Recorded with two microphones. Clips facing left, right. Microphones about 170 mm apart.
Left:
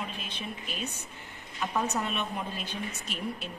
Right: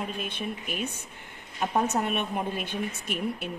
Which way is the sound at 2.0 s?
55° right (ahead or behind).